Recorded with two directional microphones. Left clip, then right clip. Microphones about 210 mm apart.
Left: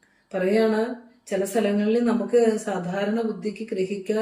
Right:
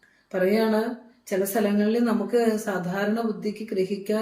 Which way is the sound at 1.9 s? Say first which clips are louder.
Left 2 dB; 5° right (ahead or behind).